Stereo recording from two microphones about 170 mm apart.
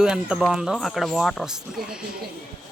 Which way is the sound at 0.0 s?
5° right (ahead or behind).